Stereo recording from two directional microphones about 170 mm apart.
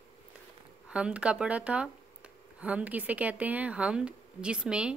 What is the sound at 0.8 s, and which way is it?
Speech, 5° right (ahead or behind).